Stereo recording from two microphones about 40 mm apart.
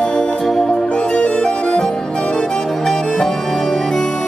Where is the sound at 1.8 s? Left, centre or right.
Centre.